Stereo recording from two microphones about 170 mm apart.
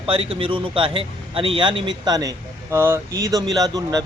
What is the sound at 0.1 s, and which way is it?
Speech, 35° right (ahead or behind).